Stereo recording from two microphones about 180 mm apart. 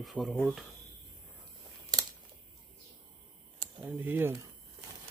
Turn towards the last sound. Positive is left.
turn(degrees=-15)  # may be behind; listen again after turning